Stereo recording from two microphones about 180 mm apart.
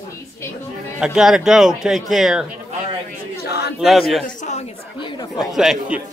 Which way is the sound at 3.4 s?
65° left (ahead or behind).